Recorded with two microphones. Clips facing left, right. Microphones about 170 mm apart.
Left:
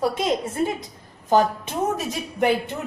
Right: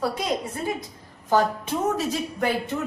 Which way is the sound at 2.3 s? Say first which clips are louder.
Left 8 dB; 20° left (ahead or behind).